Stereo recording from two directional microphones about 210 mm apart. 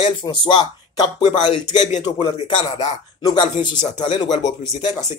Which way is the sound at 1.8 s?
35° left (ahead or behind).